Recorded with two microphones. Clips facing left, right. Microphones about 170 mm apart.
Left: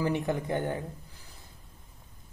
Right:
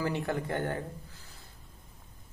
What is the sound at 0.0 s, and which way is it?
Speech, 15° left (ahead or behind).